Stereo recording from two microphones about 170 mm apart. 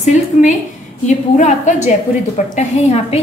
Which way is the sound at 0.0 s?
45° left (ahead or behind).